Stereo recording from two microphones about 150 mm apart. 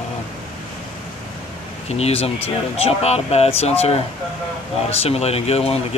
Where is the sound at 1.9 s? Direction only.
45° left (ahead or behind).